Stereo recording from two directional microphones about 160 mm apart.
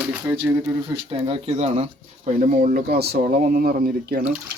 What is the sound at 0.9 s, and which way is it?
Speech, 35° right (ahead or behind).